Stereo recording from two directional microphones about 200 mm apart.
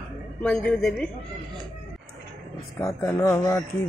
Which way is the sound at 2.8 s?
15° left (ahead or behind).